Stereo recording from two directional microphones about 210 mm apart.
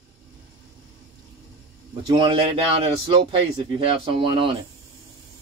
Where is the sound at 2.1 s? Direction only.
25° right (ahead or behind).